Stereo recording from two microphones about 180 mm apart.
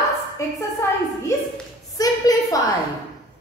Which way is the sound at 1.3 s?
15° left (ahead or behind).